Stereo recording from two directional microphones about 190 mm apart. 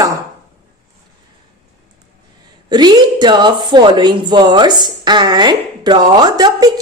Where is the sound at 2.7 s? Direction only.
20° right (ahead or behind).